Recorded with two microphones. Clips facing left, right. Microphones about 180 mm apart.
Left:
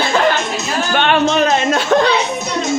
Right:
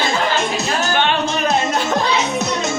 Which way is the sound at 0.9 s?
70° left (ahead or behind).